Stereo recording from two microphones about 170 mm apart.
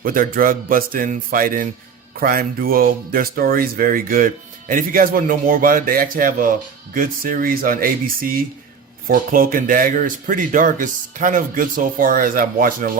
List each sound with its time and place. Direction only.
0.0 s speech: 55° right (ahead or behind)